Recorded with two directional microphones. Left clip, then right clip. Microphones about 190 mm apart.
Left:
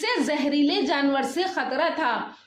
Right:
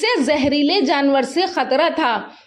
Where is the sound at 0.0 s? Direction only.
35° right (ahead or behind).